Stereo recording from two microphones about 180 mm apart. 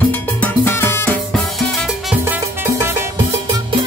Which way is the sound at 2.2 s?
15° right (ahead or behind).